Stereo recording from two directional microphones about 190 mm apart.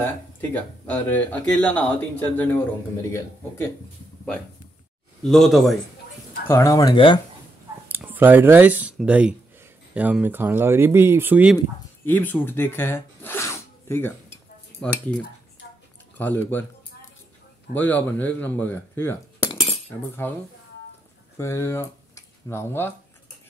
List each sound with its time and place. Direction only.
0.0 s speech: 10° left (ahead or behind)
5.2 s speech: centre (ahead or behind)
6.4 s speech: 15° left (ahead or behind)
7.9 s speech: 10° right (ahead or behind)
11.5 s speech: 10° left (ahead or behind)
17.7 s speech: 10° left (ahead or behind)
19.4 s cutlery: 30° left (ahead or behind)
20.2 s speech: 10° left (ahead or behind)